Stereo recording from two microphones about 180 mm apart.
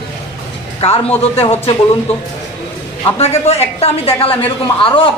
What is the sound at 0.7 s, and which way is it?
Speech, 35° left (ahead or behind).